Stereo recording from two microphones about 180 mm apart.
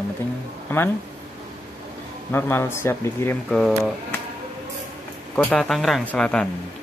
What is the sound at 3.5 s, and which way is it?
Speech, centre (ahead or behind).